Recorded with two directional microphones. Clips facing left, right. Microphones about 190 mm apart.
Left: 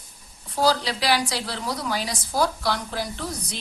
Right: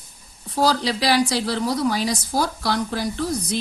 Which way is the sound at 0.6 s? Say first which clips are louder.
Right 2 dB; 40° right (ahead or behind).